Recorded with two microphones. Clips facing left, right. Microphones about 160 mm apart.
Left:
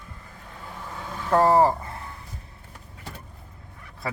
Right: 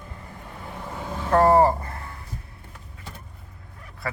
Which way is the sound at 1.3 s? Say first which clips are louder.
Right 1 dB; 10° left (ahead or behind).